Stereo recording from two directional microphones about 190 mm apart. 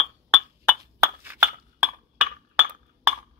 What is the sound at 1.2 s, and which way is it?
Chink, 10° right (ahead or behind).